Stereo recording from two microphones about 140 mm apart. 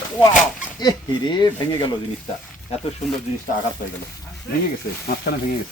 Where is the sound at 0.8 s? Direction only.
30° left (ahead or behind).